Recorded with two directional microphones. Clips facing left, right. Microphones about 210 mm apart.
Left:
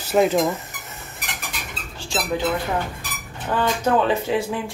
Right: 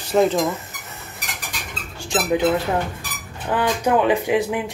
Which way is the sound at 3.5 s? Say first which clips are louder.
Right 1 dB; 15° right (ahead or behind).